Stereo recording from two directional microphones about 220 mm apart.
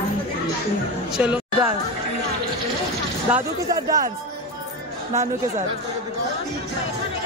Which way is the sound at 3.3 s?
15° right (ahead or behind).